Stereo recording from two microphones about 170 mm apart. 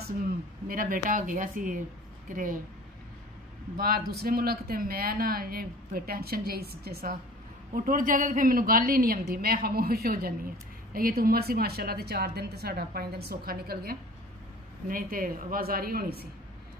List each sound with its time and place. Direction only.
0.7 s speech: 55° right (ahead or behind)
3.8 s speech: 65° right (ahead or behind)